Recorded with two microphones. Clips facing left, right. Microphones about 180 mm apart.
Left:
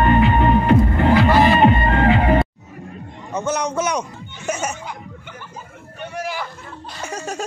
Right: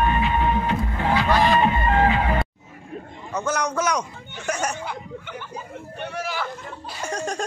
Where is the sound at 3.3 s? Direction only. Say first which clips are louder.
Left 3 dB; 25° left (ahead or behind).